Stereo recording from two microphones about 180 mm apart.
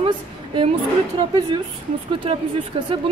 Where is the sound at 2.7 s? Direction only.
35° right (ahead or behind).